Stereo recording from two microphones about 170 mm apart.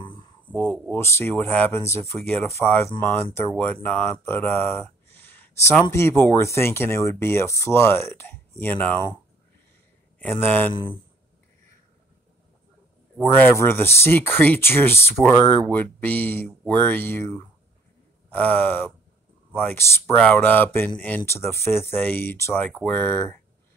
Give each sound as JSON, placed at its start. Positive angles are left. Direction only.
{"t": 0.5, "sound": "speech", "side_deg": 5}
{"t": 10.1, "sound": "a man's voice", "side_deg": 10}
{"t": 10.7, "sound": "speech", "side_deg": 30}
{"t": 13.2, "sound": "speech", "side_deg": 15}